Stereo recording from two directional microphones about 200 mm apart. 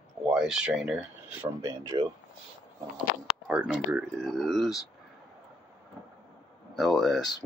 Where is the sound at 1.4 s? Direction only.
15° right (ahead or behind).